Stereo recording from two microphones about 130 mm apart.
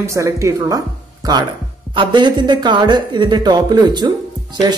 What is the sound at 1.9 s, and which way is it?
A man's voice, 35° right (ahead or behind).